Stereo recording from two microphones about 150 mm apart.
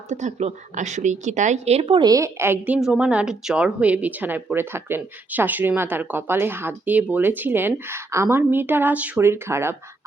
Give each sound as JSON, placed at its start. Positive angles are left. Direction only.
{"t": 0.1, "sound": "a woman's voice", "side_deg": -50}
{"t": 2.0, "sound": "a woman's voice", "side_deg": -25}